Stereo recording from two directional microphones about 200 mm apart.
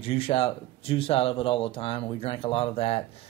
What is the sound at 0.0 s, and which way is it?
Speech, 30° left (ahead or behind).